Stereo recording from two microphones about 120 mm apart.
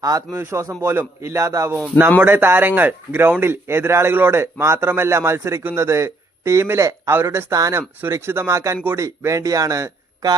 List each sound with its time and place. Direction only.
0.0 s a man's voice: 30° right (ahead or behind)